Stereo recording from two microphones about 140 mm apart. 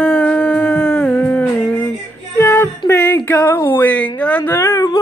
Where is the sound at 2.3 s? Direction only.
15° left (ahead or behind).